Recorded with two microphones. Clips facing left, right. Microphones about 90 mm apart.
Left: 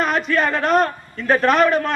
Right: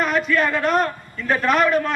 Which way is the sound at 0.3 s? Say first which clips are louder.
Left 1 dB; 25° left (ahead or behind).